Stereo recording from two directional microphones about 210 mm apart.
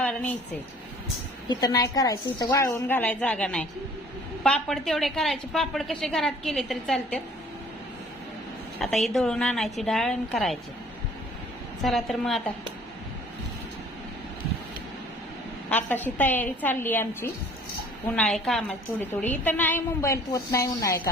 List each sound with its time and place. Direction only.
0.0 s a sound: 5° left (ahead or behind)
1.5 s a woman's voice: 20° left (ahead or behind); by 7.2 s centre (ahead or behind)
8.8 s a woman's voice: centre (ahead or behind)
11.8 s a woman's voice: centre (ahead or behind)
15.7 s a woman's voice: 10° left (ahead or behind)